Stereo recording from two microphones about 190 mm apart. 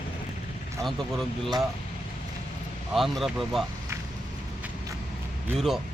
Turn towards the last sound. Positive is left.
turn(degrees=0)  # may be behind; listen again after turning